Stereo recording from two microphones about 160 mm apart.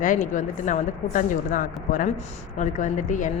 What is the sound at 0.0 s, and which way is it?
Speech, 55° left (ahead or behind).